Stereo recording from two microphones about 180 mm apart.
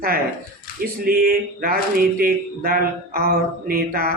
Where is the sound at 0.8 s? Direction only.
55° right (ahead or behind).